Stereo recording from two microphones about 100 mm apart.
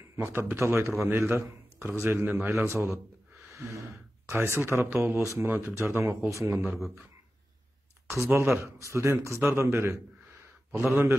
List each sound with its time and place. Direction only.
0.1 s speech: 25° right (ahead or behind)
4.3 s speech: 25° right (ahead or behind)
8.1 s speech: 25° right (ahead or behind)